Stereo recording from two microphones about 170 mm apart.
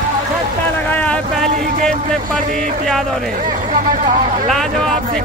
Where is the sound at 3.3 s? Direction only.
50° right (ahead or behind).